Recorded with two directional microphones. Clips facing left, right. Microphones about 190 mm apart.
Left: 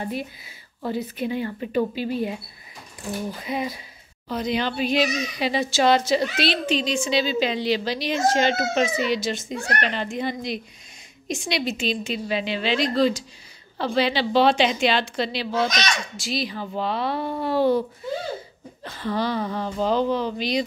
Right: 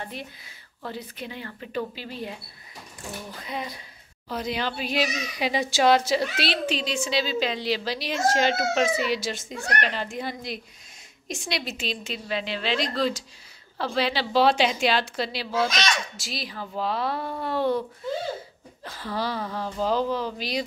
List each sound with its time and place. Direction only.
0.0 s a woman's voice: 10° left (ahead or behind)
3.4 s a woman's voice: 10° left (ahead or behind)
4.3 s a child's voice: 5° right (ahead or behind)
18.9 s a child's voice: 5° right (ahead or behind)